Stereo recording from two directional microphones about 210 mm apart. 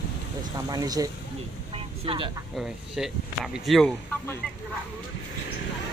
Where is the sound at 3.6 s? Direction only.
Centre (ahead or behind).